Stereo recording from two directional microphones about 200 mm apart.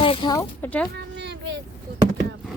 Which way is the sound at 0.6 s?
5° left (ahead or behind).